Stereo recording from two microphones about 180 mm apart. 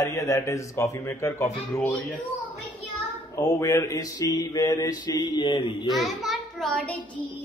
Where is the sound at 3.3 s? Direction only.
20° left (ahead or behind).